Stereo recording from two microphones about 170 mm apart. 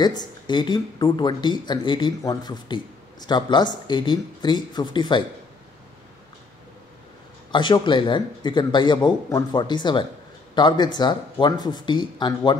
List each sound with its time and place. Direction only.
0.0 s speech: 25° left (ahead or behind)
7.5 s speech: 25° left (ahead or behind)